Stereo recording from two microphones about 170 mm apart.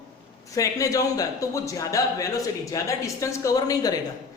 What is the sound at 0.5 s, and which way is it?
A man's voice, 20° left (ahead or behind).